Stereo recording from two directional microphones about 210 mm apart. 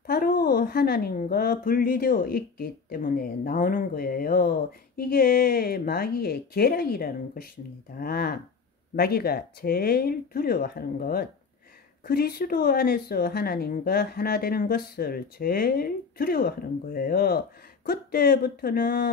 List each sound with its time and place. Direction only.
0.0 s a woman's voice: 45° left (ahead or behind)